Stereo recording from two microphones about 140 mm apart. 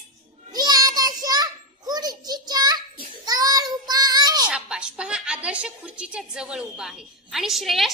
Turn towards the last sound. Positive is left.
turn(degrees=0)  # may be behind; listen again after turning